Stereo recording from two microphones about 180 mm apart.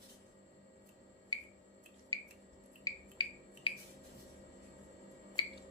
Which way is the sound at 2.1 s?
20° left (ahead or behind).